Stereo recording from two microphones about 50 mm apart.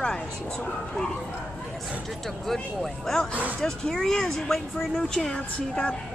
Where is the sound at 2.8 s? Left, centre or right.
Centre.